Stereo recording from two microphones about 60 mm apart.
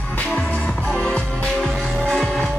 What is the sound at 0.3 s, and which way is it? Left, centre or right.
Music, centre.